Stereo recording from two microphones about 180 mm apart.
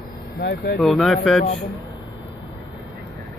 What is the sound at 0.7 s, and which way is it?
Speech, centre (ahead or behind).